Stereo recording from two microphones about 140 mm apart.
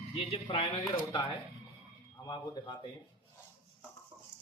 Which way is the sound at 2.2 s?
30° left (ahead or behind).